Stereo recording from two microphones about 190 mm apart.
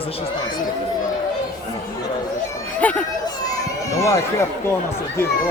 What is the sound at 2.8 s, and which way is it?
Speech, 10° left (ahead or behind).